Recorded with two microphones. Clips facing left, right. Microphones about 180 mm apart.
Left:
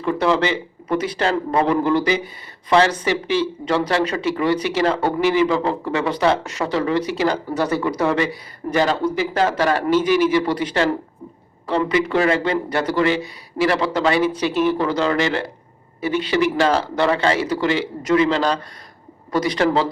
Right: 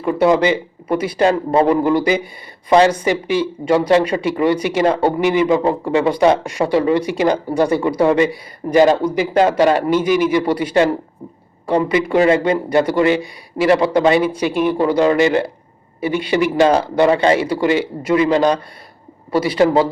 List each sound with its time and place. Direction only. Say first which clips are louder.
0.0 s a man's voice: right 5 dB; 10° right (ahead or behind)
4.5 s a man's voice: right 3 dB; 10° right (ahead or behind)